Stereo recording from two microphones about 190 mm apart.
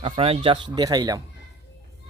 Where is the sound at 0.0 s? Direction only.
30° right (ahead or behind).